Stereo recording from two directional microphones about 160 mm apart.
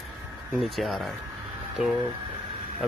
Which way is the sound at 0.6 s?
Centre (ahead or behind).